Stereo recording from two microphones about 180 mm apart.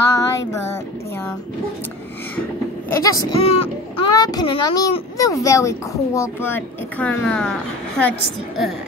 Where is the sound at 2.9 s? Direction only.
20° left (ahead or behind).